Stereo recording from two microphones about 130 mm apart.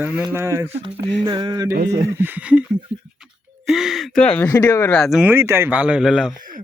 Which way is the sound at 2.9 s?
15° right (ahead or behind).